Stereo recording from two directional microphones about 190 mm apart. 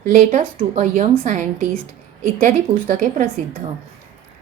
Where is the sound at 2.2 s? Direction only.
45° right (ahead or behind).